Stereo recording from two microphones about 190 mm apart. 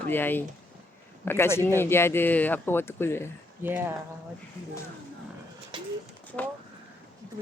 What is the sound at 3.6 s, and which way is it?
Speech, 10° right (ahead or behind).